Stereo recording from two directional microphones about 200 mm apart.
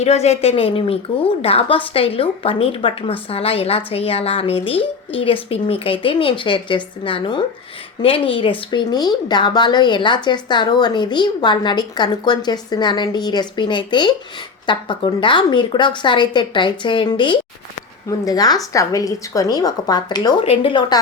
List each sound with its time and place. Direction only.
0.0 s a woman's voice: 30° left (ahead or behind)